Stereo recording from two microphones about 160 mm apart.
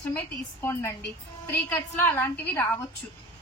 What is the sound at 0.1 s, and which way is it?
A woman's voice, 15° left (ahead or behind).